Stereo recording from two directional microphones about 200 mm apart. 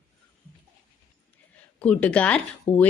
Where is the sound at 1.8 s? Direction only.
5° left (ahead or behind).